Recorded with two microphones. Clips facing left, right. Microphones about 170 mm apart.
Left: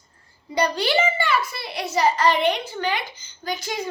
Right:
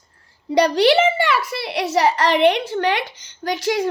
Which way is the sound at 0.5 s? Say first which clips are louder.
Right 7 dB; 75° right (ahead or behind).